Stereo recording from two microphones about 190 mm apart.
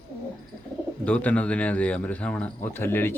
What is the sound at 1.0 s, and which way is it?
Speech, 5° left (ahead or behind).